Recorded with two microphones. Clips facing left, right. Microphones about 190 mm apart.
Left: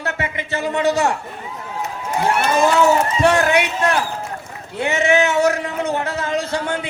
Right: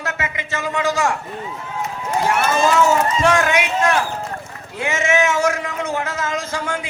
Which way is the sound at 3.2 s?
35° left (ahead or behind).